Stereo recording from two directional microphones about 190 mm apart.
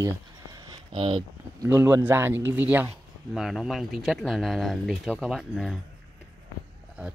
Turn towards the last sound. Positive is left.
turn(degrees=0)  # may be behind; listen again after turning